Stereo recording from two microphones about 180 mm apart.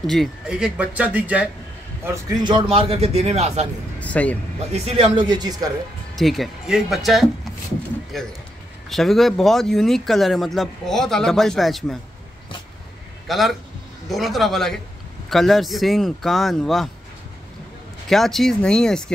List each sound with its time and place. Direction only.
0.0 s speech: centre (ahead or behind)
2.0 s a man's voice: 25° right (ahead or behind)
4.0 s speech: 10° left (ahead or behind)
4.7 s speech: 35° right (ahead or behind)
6.1 s speech: centre (ahead or behind)
8.8 s speech: centre (ahead or behind)
13.3 s speech: centre (ahead or behind)
18.0 s speech: centre (ahead or behind)